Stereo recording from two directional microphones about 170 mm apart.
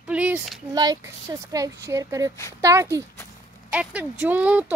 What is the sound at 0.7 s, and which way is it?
Speech, 20° right (ahead or behind).